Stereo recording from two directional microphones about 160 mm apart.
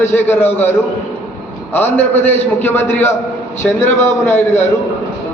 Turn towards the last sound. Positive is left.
turn(degrees=15)  # may be behind; listen again after turning